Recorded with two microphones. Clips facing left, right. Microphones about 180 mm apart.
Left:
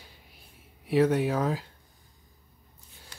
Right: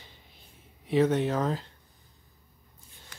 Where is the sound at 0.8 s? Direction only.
10° left (ahead or behind).